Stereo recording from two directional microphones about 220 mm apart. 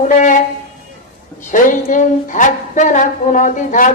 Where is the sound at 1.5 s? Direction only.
35° left (ahead or behind).